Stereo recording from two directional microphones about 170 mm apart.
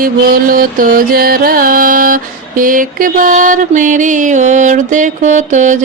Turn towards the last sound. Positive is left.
turn(degrees=-45)  # may be behind; listen again after turning